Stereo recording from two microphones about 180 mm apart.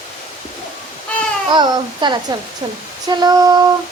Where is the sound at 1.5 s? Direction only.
25° right (ahead or behind).